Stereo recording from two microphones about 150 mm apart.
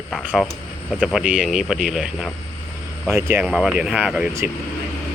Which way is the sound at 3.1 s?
15° right (ahead or behind).